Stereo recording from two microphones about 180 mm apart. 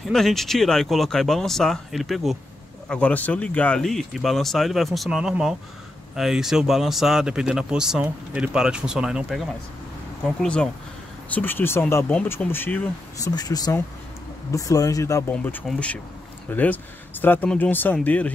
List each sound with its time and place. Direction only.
0.0 s speech: centre (ahead or behind); by 15.3 s 20° left (ahead or behind)
15.3 s speech: 5° left (ahead or behind)